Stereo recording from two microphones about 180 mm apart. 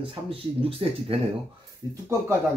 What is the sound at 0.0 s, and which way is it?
Speech, 30° right (ahead or behind).